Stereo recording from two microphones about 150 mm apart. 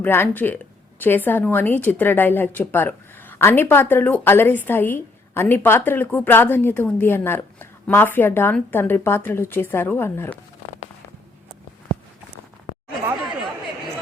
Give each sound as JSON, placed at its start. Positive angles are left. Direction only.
{"t": 0.0, "sound": "a woman's voice", "side_deg": 15}